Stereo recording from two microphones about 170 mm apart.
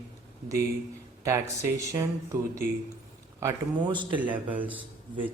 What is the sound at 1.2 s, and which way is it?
Speech, 15° right (ahead or behind).